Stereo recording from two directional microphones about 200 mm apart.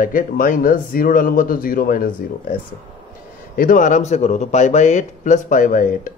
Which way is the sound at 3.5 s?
40° left (ahead or behind).